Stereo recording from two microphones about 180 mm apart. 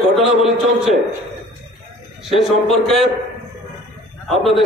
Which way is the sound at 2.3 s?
Centre (ahead or behind).